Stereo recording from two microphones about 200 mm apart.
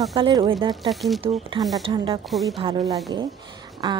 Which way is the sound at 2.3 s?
Centre (ahead or behind).